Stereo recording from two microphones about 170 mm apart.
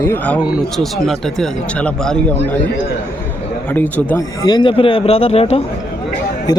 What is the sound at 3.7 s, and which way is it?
Speech, 10° left (ahead or behind).